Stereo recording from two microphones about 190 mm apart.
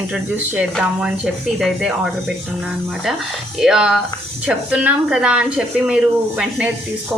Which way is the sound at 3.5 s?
5° right (ahead or behind).